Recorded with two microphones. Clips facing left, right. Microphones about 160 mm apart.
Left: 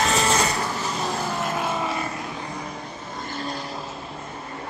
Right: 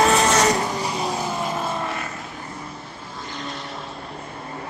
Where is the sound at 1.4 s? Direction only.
5° left (ahead or behind).